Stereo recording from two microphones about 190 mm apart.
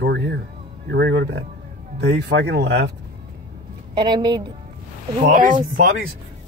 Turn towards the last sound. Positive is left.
turn(degrees=-50)  # may be behind; listen again after turning